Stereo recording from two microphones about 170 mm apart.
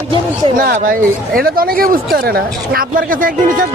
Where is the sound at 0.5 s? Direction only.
55° right (ahead or behind).